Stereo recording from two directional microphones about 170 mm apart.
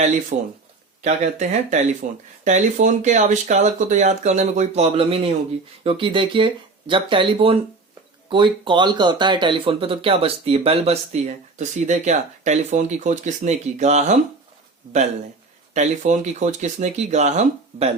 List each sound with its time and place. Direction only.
0.3 s speech: 45° right (ahead or behind)
15.7 s speech: 45° right (ahead or behind)